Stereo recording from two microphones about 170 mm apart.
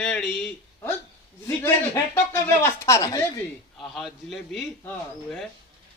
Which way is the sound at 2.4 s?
15° left (ahead or behind).